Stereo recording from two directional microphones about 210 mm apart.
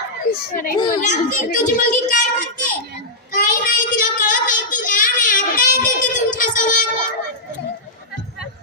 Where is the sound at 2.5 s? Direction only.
40° left (ahead or behind).